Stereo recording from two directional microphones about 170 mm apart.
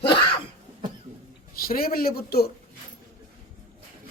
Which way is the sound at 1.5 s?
60° left (ahead or behind).